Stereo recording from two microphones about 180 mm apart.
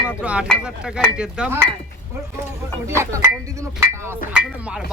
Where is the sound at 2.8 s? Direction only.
15° right (ahead or behind).